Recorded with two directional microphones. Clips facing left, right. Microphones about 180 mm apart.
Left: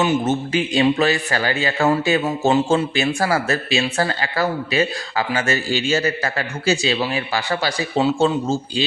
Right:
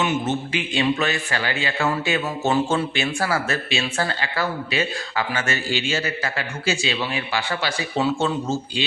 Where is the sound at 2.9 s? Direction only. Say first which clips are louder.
Left 4 dB; 40° left (ahead or behind).